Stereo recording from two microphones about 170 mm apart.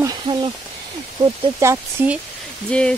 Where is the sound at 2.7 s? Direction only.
5° left (ahead or behind).